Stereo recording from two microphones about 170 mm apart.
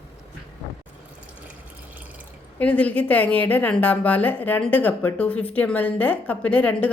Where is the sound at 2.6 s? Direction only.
10° left (ahead or behind).